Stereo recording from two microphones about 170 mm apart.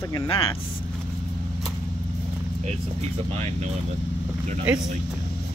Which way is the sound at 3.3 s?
35° right (ahead or behind).